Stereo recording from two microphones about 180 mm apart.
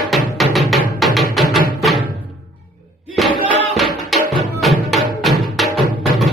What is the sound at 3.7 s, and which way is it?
Music, centre (ahead or behind).